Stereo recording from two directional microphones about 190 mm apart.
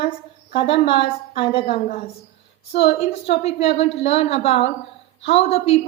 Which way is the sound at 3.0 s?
30° left (ahead or behind).